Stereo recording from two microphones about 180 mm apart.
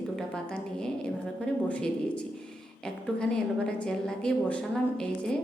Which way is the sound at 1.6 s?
5° left (ahead or behind).